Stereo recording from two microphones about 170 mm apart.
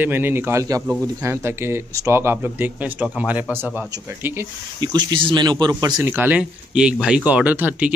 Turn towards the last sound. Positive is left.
turn(degrees=-10)  # may be behind; listen again after turning